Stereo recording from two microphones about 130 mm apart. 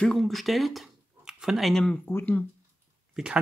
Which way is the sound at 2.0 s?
15° left (ahead or behind).